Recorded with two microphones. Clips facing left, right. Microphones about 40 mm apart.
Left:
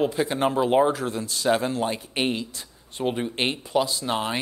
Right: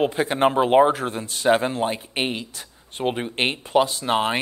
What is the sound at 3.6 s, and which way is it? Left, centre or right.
Speech, right.